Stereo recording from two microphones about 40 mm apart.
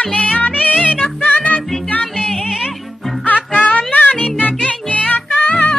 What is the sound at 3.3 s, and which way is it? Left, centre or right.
Music, left.